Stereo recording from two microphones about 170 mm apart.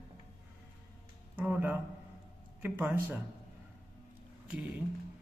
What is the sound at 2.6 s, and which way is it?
Speech, 10° right (ahead or behind).